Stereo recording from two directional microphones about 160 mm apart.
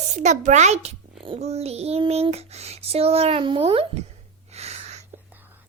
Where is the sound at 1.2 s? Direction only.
40° right (ahead or behind).